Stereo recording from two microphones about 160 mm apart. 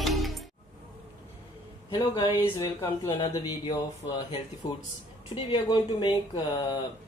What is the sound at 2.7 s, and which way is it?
Speech, 20° left (ahead or behind).